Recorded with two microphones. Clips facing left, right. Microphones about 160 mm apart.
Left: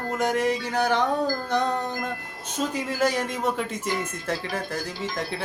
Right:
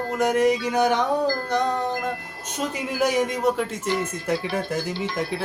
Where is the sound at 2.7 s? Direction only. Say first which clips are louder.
Right 3 dB; 15° right (ahead or behind).